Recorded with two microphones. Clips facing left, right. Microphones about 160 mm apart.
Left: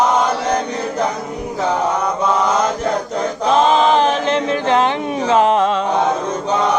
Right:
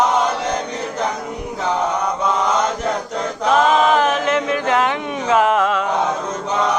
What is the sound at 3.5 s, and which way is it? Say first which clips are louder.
Speech: left 1 dB; 30° left (ahead or behind).